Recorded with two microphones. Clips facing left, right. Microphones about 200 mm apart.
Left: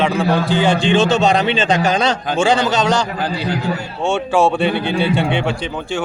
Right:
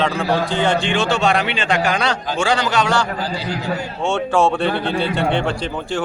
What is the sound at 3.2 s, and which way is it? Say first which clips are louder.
Speech: left 3 dB; 60° left (ahead or behind).